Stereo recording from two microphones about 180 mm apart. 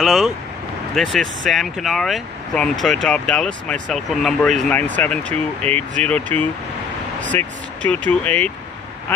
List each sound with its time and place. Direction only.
0.0 s vehicle: centre (ahead or behind)
0.9 s speech: centre (ahead or behind)
5.7 s speech: 35° right (ahead or behind)
6.0 s speech: 10° left (ahead or behind)